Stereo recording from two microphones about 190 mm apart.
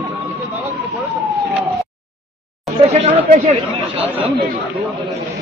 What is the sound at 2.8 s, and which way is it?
Speech, 35° right (ahead or behind).